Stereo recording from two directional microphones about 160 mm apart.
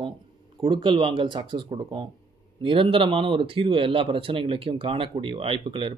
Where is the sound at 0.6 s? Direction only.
30° right (ahead or behind).